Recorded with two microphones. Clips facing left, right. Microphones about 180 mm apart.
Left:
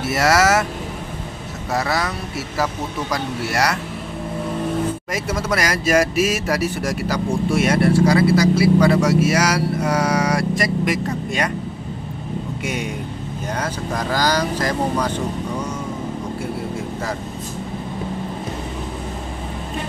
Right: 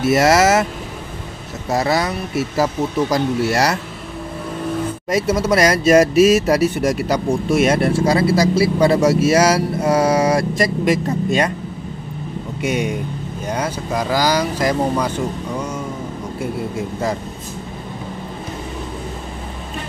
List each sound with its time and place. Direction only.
0.0 s speech: 20° right (ahead or behind)
1.7 s speech: 25° right (ahead or behind)
5.1 s speech: 25° right (ahead or behind)
12.6 s speech: 20° right (ahead or behind)